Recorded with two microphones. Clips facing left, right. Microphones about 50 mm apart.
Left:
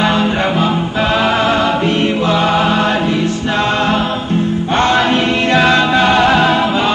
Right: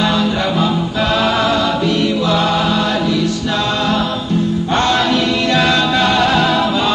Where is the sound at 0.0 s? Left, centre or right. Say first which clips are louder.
Left 2 dB; left.